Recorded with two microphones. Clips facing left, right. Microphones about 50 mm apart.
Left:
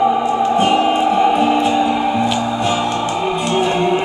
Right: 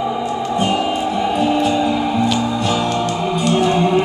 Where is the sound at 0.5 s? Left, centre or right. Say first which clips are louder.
Left 2 dB; left.